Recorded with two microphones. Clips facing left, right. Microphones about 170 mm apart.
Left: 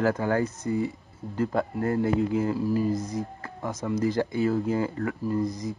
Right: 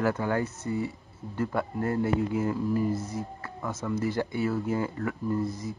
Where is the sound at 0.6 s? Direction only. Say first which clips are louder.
Left 3 dB; 25° left (ahead or behind).